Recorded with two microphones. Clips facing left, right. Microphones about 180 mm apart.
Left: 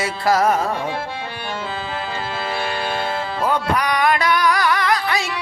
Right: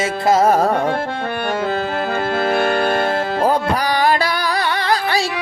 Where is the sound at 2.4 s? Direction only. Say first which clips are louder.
Right 8 dB; 55° right (ahead or behind).